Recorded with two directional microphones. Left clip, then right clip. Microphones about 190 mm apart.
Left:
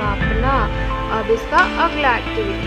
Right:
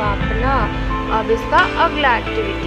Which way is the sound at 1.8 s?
20° left (ahead or behind).